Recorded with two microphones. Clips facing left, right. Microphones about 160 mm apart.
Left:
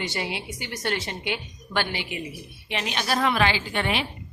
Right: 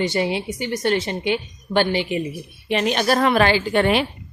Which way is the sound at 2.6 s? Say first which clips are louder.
Right 9 dB; 45° right (ahead or behind).